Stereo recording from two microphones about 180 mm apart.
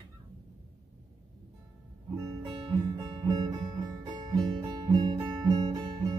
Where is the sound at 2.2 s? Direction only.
20° right (ahead or behind).